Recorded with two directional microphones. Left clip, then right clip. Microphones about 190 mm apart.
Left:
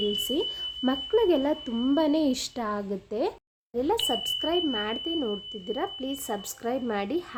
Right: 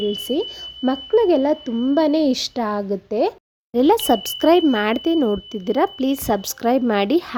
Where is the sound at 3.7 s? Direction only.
50° right (ahead or behind).